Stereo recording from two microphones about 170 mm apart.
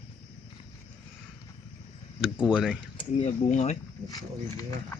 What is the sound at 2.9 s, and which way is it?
Speech, 40° left (ahead or behind).